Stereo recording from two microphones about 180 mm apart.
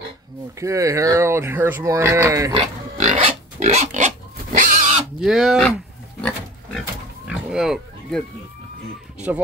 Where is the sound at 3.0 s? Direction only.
40° right (ahead or behind).